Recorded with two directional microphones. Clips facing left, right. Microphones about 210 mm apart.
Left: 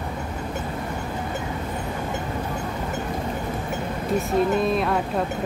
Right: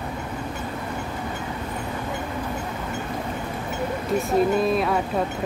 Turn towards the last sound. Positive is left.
turn(degrees=0)  # may be behind; listen again after turning